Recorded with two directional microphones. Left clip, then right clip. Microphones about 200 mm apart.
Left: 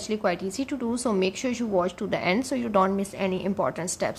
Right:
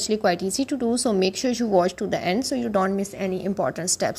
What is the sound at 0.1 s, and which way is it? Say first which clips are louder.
A woman's voice: right 4 dB; 15° right (ahead or behind).